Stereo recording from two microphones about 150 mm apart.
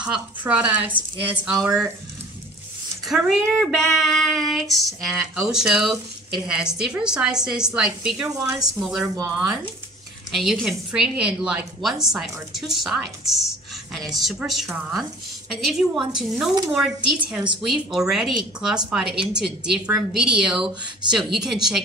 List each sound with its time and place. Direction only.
0.0 s speech: 5° right (ahead or behind)
3.1 s female singing: centre (ahead or behind)
8.4 s a woman's voice: 20° right (ahead or behind)
8.8 s female singing: 5° right (ahead or behind)